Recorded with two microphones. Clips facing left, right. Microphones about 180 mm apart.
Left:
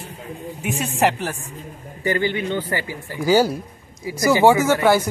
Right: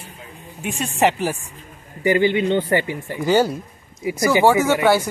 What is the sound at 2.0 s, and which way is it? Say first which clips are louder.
Speech: right 5 dB; 20° right (ahead or behind).